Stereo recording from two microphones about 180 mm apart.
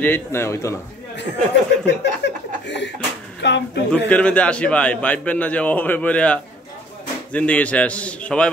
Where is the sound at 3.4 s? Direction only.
75° left (ahead or behind).